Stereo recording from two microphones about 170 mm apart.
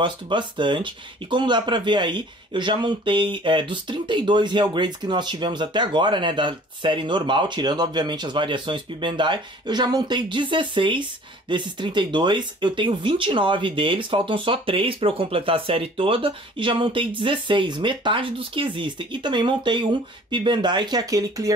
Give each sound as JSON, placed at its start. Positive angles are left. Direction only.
{"t": 0.0, "sound": "speech", "side_deg": -30}